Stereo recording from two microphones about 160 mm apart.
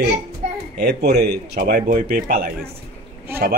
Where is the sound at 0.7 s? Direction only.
90° right.